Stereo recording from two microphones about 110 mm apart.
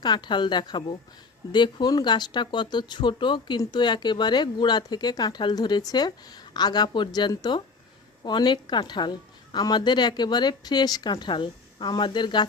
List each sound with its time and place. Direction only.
0.0 s a woman's voice: 40° left (ahead or behind)